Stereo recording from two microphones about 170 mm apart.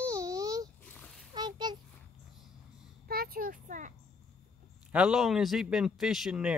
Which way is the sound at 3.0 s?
65° right (ahead or behind).